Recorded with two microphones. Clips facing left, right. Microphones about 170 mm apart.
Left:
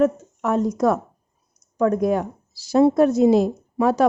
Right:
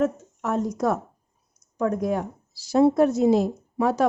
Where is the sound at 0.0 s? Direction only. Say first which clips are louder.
Left 5 dB; 90° left.